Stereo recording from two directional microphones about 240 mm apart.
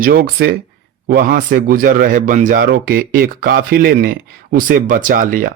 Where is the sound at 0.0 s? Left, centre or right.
Right.